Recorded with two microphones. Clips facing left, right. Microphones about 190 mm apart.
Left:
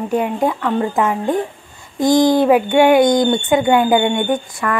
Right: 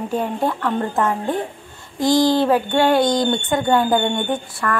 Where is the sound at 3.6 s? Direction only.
10° left (ahead or behind).